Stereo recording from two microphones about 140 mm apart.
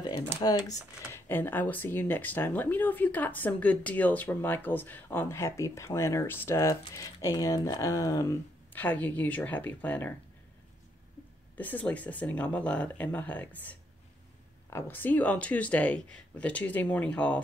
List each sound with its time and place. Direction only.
0.4 s speech: 25° left (ahead or behind)
1.3 s speech: 15° left (ahead or behind)
11.5 s speech: 10° left (ahead or behind)